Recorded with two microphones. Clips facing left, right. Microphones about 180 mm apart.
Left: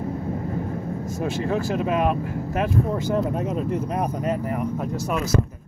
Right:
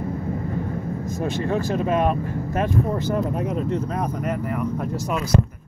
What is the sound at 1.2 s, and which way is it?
Speech, 5° left (ahead or behind).